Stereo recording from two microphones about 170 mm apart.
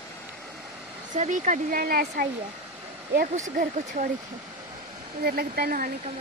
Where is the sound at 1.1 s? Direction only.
45° right (ahead or behind); by 2.2 s 60° right (ahead or behind).